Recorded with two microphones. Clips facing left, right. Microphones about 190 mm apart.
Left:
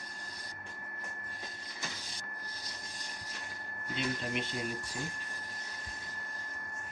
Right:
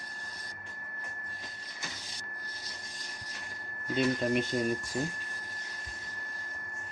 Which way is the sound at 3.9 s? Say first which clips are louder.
Right 8 dB; 45° right (ahead or behind).